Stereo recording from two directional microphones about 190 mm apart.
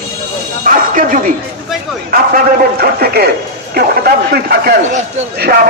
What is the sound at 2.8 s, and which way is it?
A man's voice, 55° right (ahead or behind).